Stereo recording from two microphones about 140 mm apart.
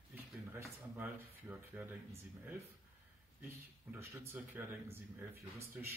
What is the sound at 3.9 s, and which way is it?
Speech, 15° right (ahead or behind).